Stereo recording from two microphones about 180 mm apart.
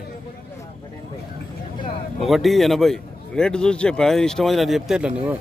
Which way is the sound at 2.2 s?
Centre (ahead or behind).